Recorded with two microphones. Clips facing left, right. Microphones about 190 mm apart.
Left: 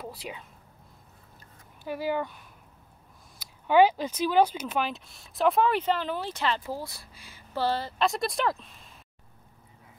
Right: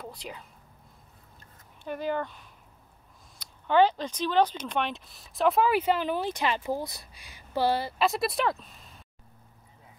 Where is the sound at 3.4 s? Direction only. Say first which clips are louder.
Left 2 dB; 10° left (ahead or behind).